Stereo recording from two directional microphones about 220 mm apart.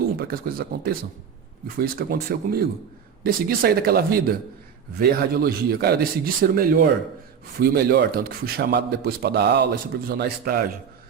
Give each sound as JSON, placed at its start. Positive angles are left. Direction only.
{"t": 0.2, "sound": "a man's voice", "side_deg": -45}